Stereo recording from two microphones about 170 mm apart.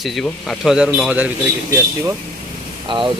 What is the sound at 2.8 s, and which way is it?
Speech, 30° right (ahead or behind).